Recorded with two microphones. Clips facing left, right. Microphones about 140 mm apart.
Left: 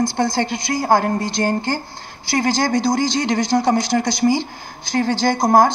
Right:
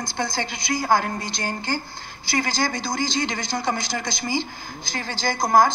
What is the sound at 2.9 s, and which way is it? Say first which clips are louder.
Speech: left 7 dB; 40° left (ahead or behind).